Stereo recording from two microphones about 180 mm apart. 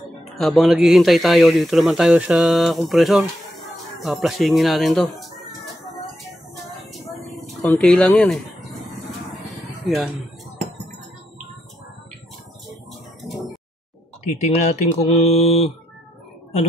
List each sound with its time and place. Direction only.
0.4 s speech: centre (ahead or behind)
6.5 s vehicle: centre (ahead or behind)
7.8 s speech: 5° left (ahead or behind)
9.5 s music: centre (ahead or behind)
13.2 s a sound: centre (ahead or behind)
14.5 s speech: 40° left (ahead or behind)